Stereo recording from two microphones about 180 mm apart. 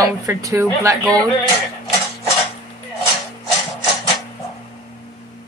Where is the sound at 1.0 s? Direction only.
5° left (ahead or behind).